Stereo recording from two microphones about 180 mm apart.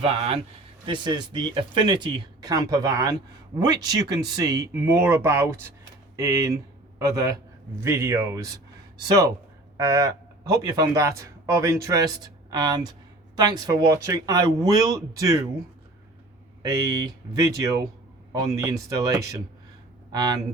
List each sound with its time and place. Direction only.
0.0 s a man's voice: 30° right (ahead or behind)
16.6 s speech: 20° right (ahead or behind)